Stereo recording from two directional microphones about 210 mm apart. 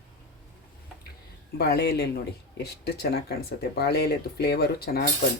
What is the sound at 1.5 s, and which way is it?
Speech, 50° left (ahead or behind).